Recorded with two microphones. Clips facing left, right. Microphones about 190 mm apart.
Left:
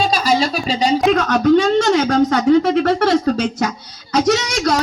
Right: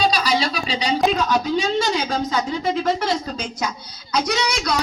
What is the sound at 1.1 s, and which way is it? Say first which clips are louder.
Speech: left 7 dB; 75° left (ahead or behind).